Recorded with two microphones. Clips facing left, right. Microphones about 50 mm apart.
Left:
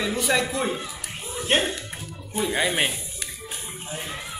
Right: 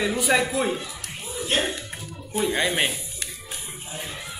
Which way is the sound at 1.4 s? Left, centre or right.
Left.